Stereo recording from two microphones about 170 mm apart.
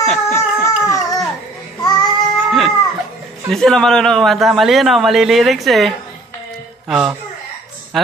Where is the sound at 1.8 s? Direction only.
25° left (ahead or behind).